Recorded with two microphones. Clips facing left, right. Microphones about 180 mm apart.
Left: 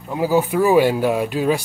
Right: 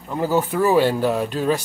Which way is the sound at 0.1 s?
10° left (ahead or behind).